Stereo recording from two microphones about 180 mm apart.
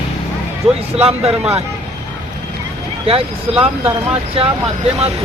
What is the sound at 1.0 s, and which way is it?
Speech, 35° right (ahead or behind).